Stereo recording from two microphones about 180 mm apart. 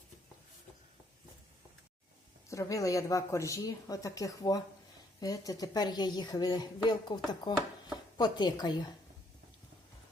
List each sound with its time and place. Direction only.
2.5 s speech: 15° left (ahead or behind)